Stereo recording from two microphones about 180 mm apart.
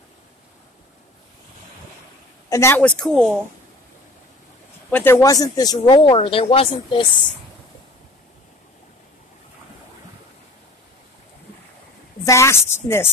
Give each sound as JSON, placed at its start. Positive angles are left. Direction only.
{"t": 2.5, "sound": "a woman's voice", "side_deg": 15}
{"t": 4.9, "sound": "speech", "side_deg": 10}
{"t": 12.3, "sound": "a woman's voice", "side_deg": 15}